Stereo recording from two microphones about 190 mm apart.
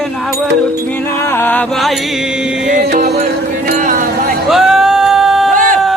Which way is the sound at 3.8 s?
45° right (ahead or behind).